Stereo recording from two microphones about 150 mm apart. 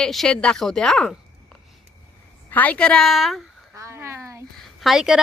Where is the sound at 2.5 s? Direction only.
10° left (ahead or behind).